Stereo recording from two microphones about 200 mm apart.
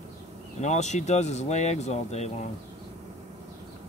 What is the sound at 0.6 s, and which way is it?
Speech, 35° left (ahead or behind).